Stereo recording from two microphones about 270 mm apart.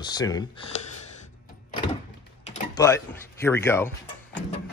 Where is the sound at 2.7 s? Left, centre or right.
Centre.